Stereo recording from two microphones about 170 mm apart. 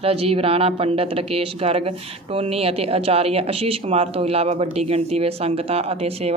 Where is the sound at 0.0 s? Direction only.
35° right (ahead or behind).